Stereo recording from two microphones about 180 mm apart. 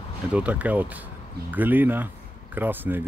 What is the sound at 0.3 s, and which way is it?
Speech, 5° right (ahead or behind).